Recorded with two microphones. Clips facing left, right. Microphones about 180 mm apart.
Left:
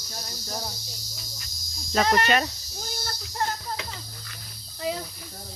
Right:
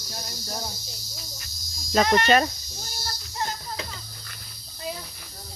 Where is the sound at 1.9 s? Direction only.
30° right (ahead or behind).